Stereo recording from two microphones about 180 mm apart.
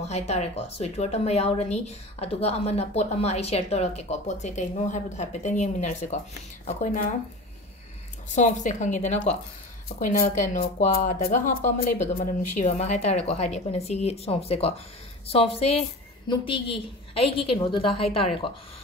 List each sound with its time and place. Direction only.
0.0 s speech: 35° left (ahead or behind)
8.4 s speech: 40° left (ahead or behind)
9.9 s a woman's voice: 50° left (ahead or behind); by 18.5 s 30° left (ahead or behind)